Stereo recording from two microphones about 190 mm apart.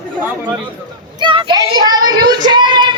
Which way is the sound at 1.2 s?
25° right (ahead or behind).